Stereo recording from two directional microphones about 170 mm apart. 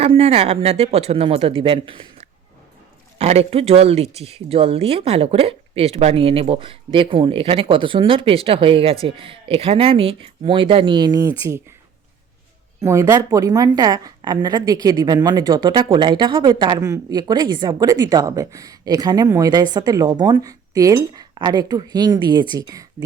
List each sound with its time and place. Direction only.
0.0 s speech: 35° right (ahead or behind)
3.2 s speech: 40° right (ahead or behind); by 11.6 s 20° right (ahead or behind)
12.8 s a woman's voice: 15° right (ahead or behind)